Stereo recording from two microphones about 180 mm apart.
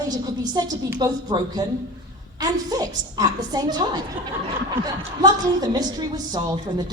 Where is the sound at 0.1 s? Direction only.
20° right (ahead or behind).